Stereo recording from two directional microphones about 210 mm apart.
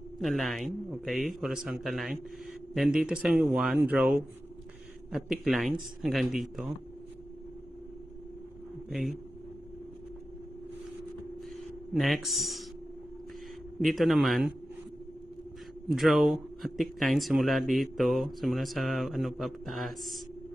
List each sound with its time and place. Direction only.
0.2 s speech: centre (ahead or behind)
11.9 s speech: centre (ahead or behind)
13.7 s speech: centre (ahead or behind)
15.9 s speech: centre (ahead or behind)